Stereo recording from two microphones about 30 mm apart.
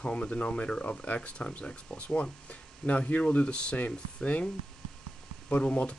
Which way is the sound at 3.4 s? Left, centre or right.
Left.